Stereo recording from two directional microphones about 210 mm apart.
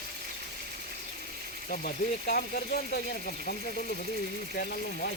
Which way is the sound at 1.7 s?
45° left (ahead or behind).